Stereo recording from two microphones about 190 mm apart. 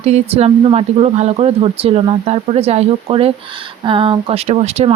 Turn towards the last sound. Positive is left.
turn(degrees=-35)  # may be behind; listen again after turning